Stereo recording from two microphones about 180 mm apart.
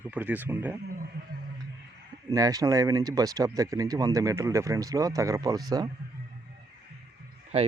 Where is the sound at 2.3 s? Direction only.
20° right (ahead or behind).